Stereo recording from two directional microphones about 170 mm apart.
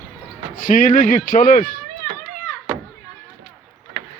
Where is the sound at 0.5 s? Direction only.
50° left (ahead or behind).